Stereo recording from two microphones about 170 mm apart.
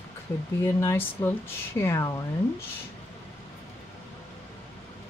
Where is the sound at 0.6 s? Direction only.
15° left (ahead or behind).